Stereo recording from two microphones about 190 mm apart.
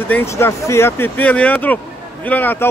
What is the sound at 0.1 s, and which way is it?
Speech, 15° left (ahead or behind).